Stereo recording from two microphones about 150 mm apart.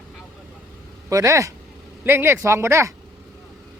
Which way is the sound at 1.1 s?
20° right (ahead or behind).